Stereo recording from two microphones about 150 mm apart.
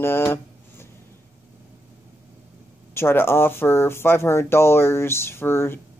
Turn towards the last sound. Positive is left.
turn(degrees=15)  # may be behind; listen again after turning